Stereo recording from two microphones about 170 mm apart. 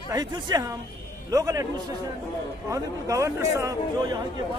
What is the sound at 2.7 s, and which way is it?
A woman's voice, 20° right (ahead or behind).